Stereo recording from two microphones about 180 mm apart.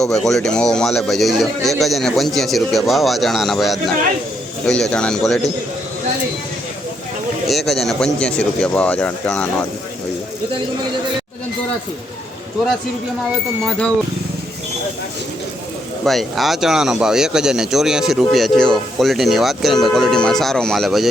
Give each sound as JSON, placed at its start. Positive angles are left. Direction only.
{"t": 0.0, "sound": "speech", "side_deg": 0}
{"t": 7.4, "sound": "speech", "side_deg": 0}
{"t": 13.7, "sound": "speech", "side_deg": 5}
{"t": 16.0, "sound": "speech", "side_deg": 0}